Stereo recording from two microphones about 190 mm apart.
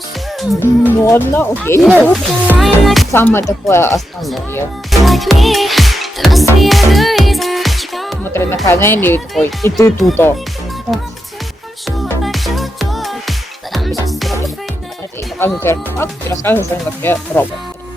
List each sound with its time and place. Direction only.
0.6 s speech: 10° left (ahead or behind)
3.1 s speech: 10° left (ahead or behind)
4.2 s speech: centre (ahead or behind)
4.9 s music: centre (ahead or behind)
8.2 s speech: 10° left (ahead or behind)
12.2 s music: centre (ahead or behind)
15.4 s speech: 10° left (ahead or behind)